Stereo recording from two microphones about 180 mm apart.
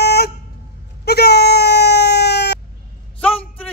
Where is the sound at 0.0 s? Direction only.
65° left (ahead or behind).